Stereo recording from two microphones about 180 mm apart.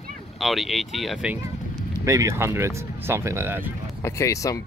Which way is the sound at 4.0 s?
15° left (ahead or behind).